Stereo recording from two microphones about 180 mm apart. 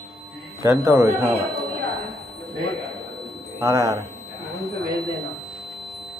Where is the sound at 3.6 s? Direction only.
15° right (ahead or behind).